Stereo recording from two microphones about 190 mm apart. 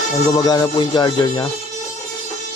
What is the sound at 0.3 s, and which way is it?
Speech, 20° left (ahead or behind).